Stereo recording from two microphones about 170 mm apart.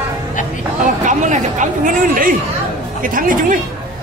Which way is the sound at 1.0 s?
45° right (ahead or behind).